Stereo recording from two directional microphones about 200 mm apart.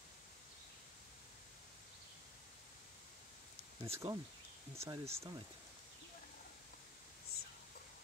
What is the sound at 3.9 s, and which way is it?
Speech, 15° right (ahead or behind).